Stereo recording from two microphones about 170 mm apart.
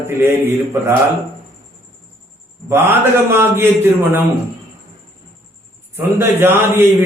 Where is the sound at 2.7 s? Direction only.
15° right (ahead or behind).